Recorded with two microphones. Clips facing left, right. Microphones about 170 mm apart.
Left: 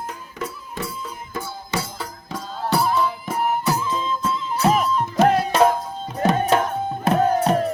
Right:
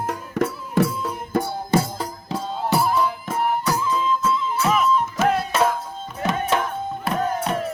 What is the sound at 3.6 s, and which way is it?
Music, 20° left (ahead or behind).